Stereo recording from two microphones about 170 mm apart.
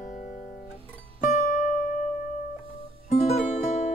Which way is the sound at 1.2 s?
45° left (ahead or behind).